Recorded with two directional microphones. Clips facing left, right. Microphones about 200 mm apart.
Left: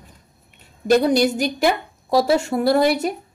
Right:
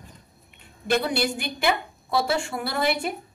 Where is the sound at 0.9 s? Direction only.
40° left (ahead or behind).